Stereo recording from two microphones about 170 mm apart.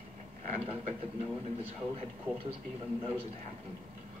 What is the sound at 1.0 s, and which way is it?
Speech, 35° right (ahead or behind).